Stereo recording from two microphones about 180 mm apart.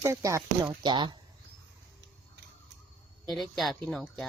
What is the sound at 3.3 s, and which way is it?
Speech, centre (ahead or behind).